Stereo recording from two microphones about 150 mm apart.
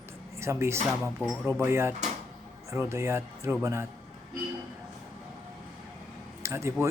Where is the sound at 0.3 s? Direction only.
20° right (ahead or behind).